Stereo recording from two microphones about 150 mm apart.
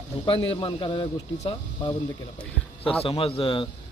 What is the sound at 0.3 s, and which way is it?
A man's voice, 35° left (ahead or behind).